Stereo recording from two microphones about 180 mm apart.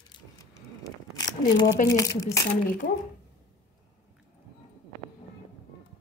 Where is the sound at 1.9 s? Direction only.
20° left (ahead or behind).